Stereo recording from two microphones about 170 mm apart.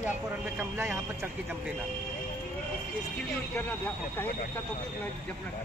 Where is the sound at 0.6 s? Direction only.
15° right (ahead or behind).